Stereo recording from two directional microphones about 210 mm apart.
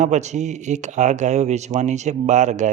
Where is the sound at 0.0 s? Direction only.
35° right (ahead or behind).